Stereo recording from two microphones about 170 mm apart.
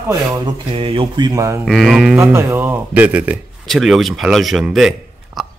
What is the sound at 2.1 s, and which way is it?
A man's voice, 15° right (ahead or behind).